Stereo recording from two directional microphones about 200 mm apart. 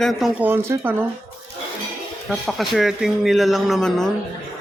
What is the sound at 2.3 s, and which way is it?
Speech, centre (ahead or behind).